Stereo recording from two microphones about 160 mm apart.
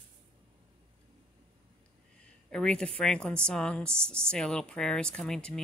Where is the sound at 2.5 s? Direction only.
5° left (ahead or behind).